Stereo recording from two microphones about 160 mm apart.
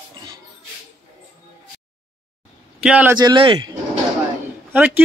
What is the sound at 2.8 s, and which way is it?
Speech, 5° right (ahead or behind).